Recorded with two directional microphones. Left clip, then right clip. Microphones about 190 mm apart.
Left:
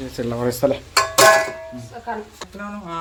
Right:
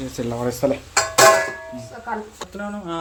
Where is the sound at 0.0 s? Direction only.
Centre (ahead or behind).